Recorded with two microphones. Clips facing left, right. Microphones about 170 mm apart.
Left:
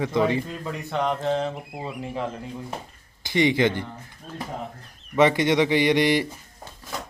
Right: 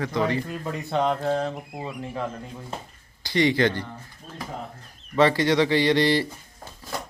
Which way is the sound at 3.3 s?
20° left (ahead or behind).